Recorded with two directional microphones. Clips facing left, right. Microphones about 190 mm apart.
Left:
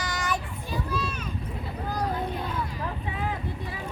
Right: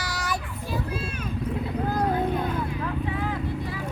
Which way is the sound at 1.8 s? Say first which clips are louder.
Right 4 dB; 50° right (ahead or behind).